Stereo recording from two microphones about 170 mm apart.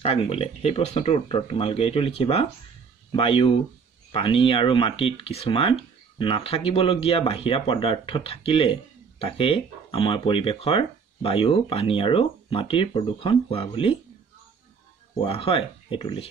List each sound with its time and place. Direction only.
0.0 s speech: 35° left (ahead or behind)
15.2 s speech: 35° left (ahead or behind)